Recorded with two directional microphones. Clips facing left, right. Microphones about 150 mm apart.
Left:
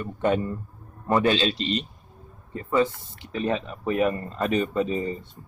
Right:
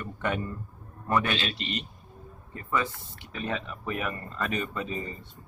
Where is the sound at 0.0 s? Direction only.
25° left (ahead or behind).